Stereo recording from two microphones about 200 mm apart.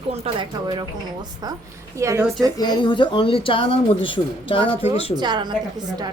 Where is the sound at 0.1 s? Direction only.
20° right (ahead or behind).